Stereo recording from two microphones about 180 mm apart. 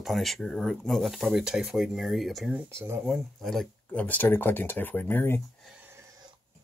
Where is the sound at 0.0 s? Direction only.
Centre (ahead or behind).